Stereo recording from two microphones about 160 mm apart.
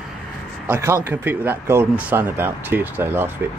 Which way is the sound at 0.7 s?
15° right (ahead or behind).